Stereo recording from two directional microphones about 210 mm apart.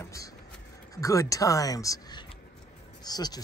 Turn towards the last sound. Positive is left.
turn(degrees=20)  # may be behind; listen again after turning